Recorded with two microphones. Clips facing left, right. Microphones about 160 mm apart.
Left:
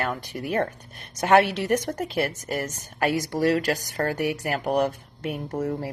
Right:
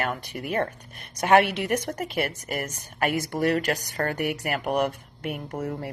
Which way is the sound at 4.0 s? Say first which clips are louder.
Left 2 dB; 35° left (ahead or behind).